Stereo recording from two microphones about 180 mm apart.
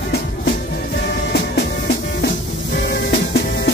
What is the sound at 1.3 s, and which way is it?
Music, 65° left (ahead or behind).